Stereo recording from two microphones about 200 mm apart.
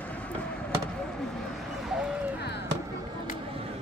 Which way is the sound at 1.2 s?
Centre (ahead or behind).